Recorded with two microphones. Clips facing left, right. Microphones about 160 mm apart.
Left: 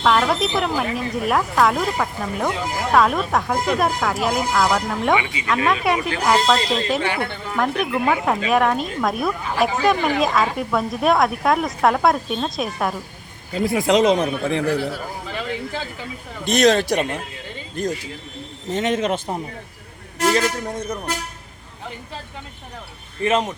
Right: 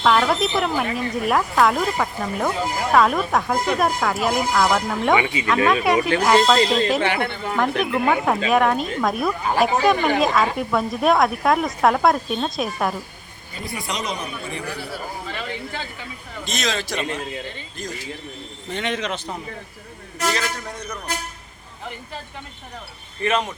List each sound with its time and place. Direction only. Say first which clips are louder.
0.0 s speech: even; centre (ahead or behind)
5.1 s speech: right 2 dB; 30° right (ahead or behind)
5.6 s speech: right 2 dB; centre (ahead or behind)
13.5 s a man's voice: left 12 dB; 90° left
16.5 s a man's voice: left 10 dB; 60° left (ahead or behind)
18.7 s a man's voice: left 5 dB; 40° left (ahead or behind)
20.2 s a man's voice: left 5 dB; 50° left (ahead or behind)
23.2 s speech: left 2 dB; 20° left (ahead or behind)